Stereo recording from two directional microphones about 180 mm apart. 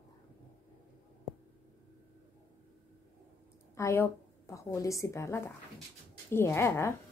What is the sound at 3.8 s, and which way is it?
A woman's voice, 15° left (ahead or behind).